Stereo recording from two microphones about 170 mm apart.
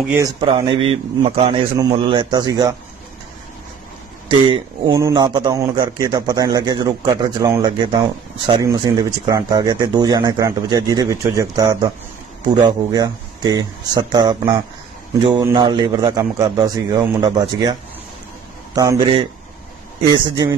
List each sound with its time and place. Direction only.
0.1 s a man's voice: 20° right (ahead or behind)
1.2 s a man's voice: 45° right (ahead or behind)
1.5 s a man's voice: 30° right (ahead or behind)
4.3 s a man's voice: 30° right (ahead or behind)
18.8 s a man's voice: 20° right (ahead or behind)